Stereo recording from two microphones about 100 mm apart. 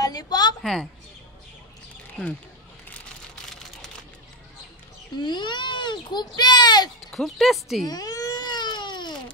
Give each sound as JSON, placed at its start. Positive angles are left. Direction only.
{"t": 0.0, "sound": "a sound", "side_deg": 40}
{"t": 0.6, "sound": "speech", "side_deg": 5}
{"t": 5.2, "sound": "a child's voice", "side_deg": 50}
{"t": 7.1, "sound": "speech", "side_deg": 0}
{"t": 7.8, "sound": "baby cry", "side_deg": 40}